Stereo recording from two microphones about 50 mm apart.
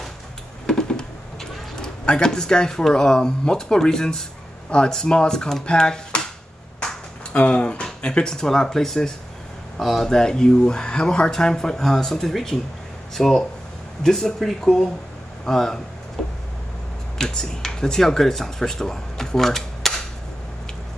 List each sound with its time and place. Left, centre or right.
0.7 s a sound: centre
4.6 s speech: centre
10.0 s speech: centre
17.2 s speech: centre